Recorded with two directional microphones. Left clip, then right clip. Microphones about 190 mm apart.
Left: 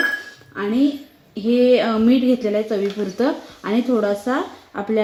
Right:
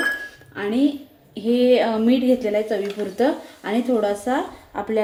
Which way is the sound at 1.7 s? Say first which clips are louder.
Left 1 dB; 35° left (ahead or behind).